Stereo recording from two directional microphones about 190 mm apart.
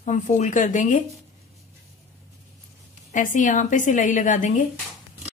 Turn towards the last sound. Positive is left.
turn(degrees=40)  # may be behind; listen again after turning